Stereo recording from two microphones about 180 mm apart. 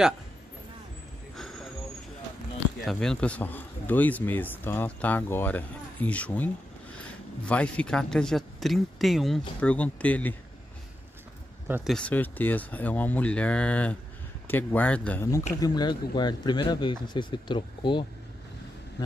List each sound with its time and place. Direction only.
1.3 s a sound: centre (ahead or behind)
2.8 s speech: 5° left (ahead or behind)
11.6 s speech: 10° right (ahead or behind)
11.9 s speech: 10° left (ahead or behind)
15.6 s speech: 20° left (ahead or behind)